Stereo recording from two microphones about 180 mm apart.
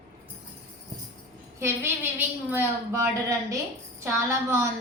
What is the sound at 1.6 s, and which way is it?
A woman's voice, 15° right (ahead or behind).